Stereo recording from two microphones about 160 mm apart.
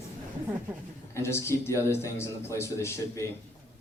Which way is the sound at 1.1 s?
15° left (ahead or behind).